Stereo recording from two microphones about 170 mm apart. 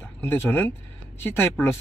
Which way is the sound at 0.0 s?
15° left (ahead or behind).